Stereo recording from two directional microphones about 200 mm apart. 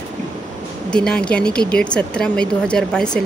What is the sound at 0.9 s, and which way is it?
Speech, 5° left (ahead or behind).